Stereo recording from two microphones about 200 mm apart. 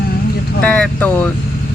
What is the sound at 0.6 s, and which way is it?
Speech, 10° left (ahead or behind).